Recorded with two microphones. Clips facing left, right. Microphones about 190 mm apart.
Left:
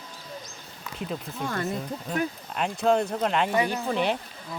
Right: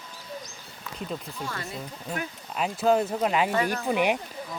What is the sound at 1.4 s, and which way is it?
Speech, 55° left (ahead or behind).